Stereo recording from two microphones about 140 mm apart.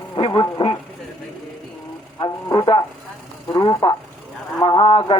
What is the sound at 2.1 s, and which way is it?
Speech, 30° left (ahead or behind).